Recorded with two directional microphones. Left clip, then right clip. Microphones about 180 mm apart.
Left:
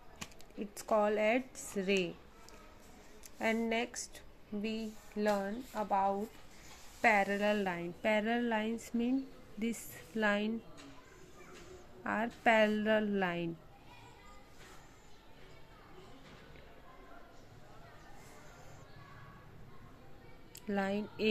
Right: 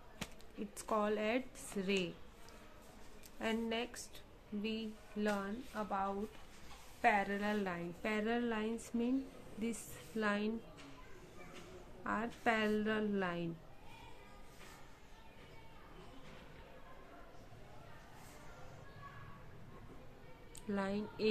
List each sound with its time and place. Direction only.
0.7 s speech: 15° left (ahead or behind)
3.3 s a woman's voice: 20° left (ahead or behind)
12.0 s a woman's voice: 25° left (ahead or behind)
20.6 s a woman's voice: 25° left (ahead or behind)